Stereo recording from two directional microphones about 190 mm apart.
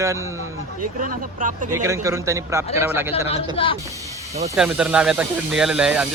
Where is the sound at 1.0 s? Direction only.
45° right (ahead or behind).